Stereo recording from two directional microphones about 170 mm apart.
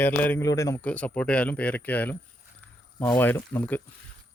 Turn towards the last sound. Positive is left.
turn(degrees=10)  # may be behind; listen again after turning